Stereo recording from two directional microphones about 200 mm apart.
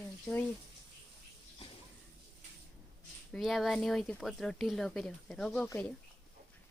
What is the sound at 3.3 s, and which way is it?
Speech, centre (ahead or behind).